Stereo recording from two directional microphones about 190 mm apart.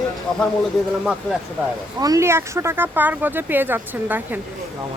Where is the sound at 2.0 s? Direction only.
15° right (ahead or behind).